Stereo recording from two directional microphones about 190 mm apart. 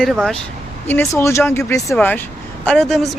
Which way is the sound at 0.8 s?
15° left (ahead or behind).